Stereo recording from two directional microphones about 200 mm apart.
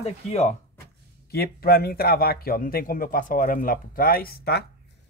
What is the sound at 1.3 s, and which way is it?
A man's voice, 50° left (ahead or behind).